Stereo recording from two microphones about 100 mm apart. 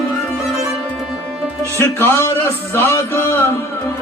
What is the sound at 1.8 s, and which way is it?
Music, 25° left (ahead or behind).